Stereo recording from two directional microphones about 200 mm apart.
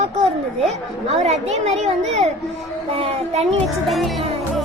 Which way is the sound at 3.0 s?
30° right (ahead or behind).